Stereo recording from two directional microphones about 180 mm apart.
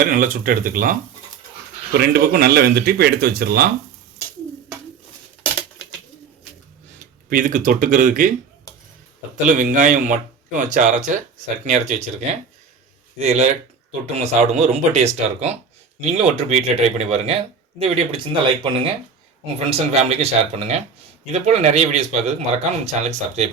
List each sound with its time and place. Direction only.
0.0 s speech: 50° right (ahead or behind)
7.3 s speech: 45° right (ahead or behind)
9.5 s speech: 45° right (ahead or behind)